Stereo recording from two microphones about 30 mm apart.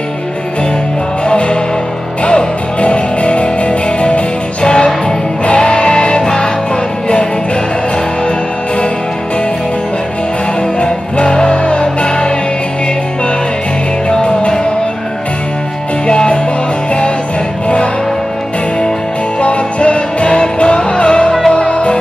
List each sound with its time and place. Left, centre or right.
1.2 s music: left
4.6 s music: left
10.8 s music: left
14.0 s music: left
16.1 s music: left
19.4 s music: left